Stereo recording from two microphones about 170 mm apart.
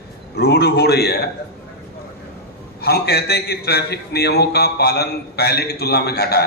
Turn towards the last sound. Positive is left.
turn(degrees=70)  # may be behind; listen again after turning